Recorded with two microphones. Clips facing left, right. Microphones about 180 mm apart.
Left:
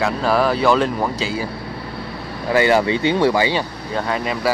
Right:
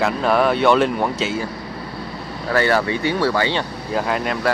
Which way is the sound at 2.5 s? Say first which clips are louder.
Left 3 dB; 15° left (ahead or behind).